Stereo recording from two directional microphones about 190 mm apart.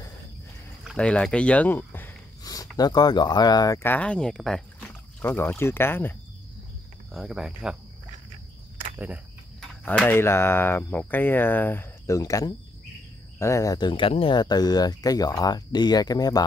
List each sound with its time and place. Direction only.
0.8 s a sound: 5° left (ahead or behind)
2.8 s speech: 20° left (ahead or behind)
7.1 s speech: centre (ahead or behind)
8.9 s speech: 10° right (ahead or behind)
9.8 s speech: 10° left (ahead or behind)